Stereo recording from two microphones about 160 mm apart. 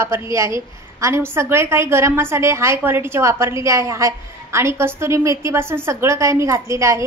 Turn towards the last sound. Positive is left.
turn(degrees=-20)  # may be behind; listen again after turning